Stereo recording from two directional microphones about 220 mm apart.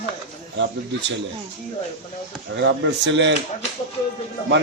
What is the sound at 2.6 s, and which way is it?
Speech, 55° right (ahead or behind).